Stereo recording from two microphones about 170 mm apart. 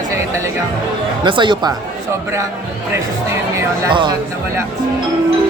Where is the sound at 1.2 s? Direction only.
25° right (ahead or behind).